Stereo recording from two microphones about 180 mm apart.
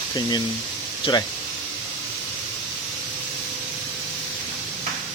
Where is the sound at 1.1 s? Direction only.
25° left (ahead or behind).